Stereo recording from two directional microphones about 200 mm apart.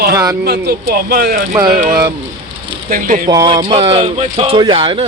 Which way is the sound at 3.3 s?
20° right (ahead or behind).